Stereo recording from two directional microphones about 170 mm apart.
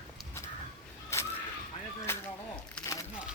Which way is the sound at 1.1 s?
15° left (ahead or behind).